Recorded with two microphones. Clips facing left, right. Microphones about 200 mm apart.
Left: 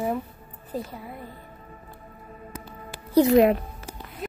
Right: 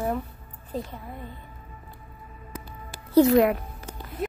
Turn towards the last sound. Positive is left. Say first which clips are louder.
# left 2 dB
turn(degrees=25)  # may be behind; listen again after turning